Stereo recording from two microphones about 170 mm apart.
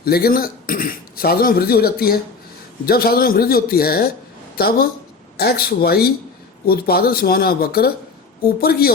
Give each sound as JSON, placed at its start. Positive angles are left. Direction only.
{"t": 0.0, "sound": "a man's voice", "side_deg": 65}